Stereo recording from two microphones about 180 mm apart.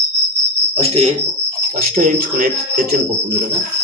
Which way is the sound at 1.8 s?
50° right (ahead or behind).